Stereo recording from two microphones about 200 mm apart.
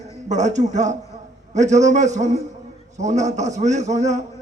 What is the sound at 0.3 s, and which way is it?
A man's voice, 35° right (ahead or behind).